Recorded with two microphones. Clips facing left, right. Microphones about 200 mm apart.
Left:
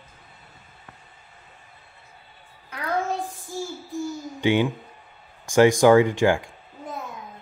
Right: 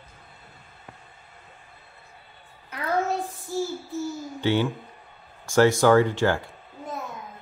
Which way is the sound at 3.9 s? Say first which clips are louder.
Even; 15° left (ahead or behind).